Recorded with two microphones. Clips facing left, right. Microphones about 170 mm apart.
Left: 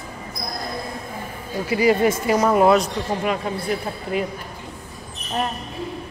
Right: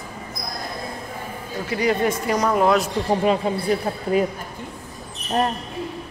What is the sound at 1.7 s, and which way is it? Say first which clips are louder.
Speech: left 3 dB; 5° left (ahead or behind).